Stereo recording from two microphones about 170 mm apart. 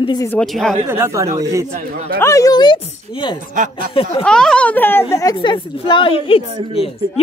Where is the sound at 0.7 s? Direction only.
15° right (ahead or behind).